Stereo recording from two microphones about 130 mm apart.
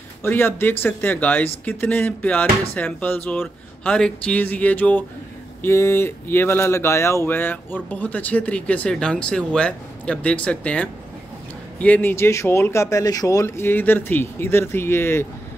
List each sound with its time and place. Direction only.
0.2 s speech: 15° left (ahead or behind)